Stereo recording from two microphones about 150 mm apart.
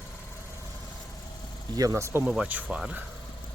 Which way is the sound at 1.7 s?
20° right (ahead or behind).